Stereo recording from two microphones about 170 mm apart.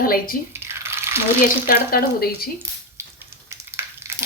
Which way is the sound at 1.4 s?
60° left (ahead or behind).